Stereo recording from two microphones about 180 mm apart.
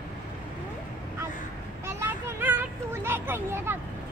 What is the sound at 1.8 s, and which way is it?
Children playing, 10° right (ahead or behind).